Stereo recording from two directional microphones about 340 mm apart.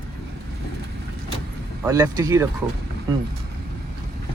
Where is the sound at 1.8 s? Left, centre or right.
Centre.